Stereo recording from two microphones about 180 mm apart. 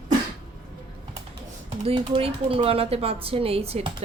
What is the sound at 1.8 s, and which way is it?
Speech, 30° right (ahead or behind).